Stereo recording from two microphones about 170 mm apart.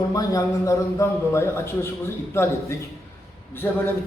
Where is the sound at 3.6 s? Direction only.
10° left (ahead or behind).